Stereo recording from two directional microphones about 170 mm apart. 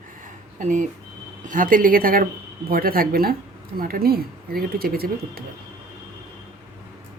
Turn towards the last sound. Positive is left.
turn(degrees=-60)  # may be behind; listen again after turning